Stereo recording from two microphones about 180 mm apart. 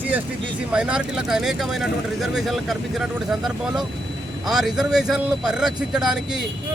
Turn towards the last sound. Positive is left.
turn(degrees=-5)  # may be behind; listen again after turning